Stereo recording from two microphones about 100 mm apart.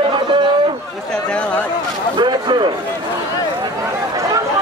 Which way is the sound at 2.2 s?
50° right (ahead or behind).